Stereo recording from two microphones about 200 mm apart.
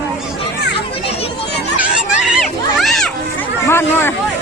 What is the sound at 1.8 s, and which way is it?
Children playing, 5° right (ahead or behind).